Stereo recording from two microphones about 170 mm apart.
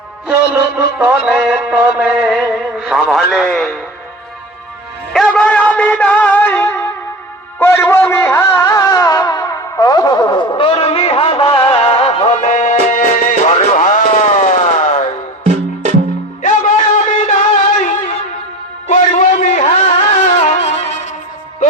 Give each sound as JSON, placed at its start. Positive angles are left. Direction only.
{"t": 0.9, "sound": "music", "side_deg": -5}
{"t": 5.1, "sound": "a sound", "side_deg": 5}
{"t": 16.4, "sound": "music", "side_deg": 50}